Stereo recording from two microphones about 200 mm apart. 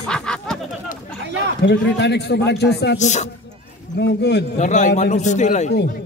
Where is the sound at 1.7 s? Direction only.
60° left (ahead or behind).